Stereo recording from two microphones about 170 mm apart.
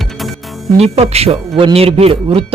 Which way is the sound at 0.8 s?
35° right (ahead or behind).